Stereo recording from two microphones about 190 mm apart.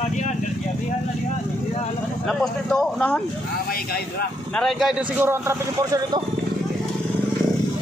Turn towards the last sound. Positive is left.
turn(degrees=-15)  # may be behind; listen again after turning